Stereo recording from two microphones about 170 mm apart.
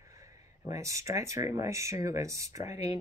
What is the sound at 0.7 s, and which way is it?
Speech, 20° right (ahead or behind).